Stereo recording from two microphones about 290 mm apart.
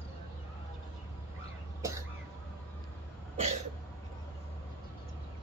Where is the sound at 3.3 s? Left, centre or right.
Right.